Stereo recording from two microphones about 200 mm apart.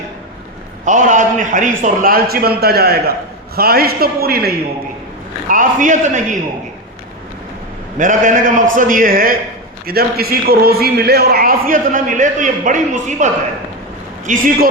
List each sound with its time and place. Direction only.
0.9 s a man's voice: 40° right (ahead or behind)
7.9 s a man's voice: 40° right (ahead or behind)